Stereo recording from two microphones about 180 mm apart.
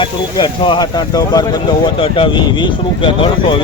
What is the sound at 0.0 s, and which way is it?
Speech, 25° left (ahead or behind).